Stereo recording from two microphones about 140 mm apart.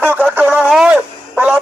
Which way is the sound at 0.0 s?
15° right (ahead or behind).